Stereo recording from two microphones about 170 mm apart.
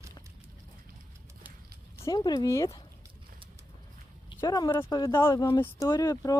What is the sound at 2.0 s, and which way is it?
Speech, 20° left (ahead or behind).